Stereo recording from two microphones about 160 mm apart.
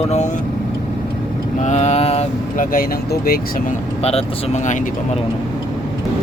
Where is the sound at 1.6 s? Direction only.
45° left (ahead or behind).